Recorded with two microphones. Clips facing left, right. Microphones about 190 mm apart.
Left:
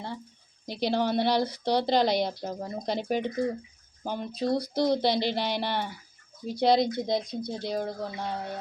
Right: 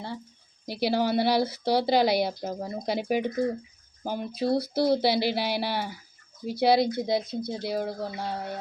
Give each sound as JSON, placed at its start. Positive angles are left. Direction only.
{"t": 0.7, "sound": "a woman's voice", "side_deg": -5}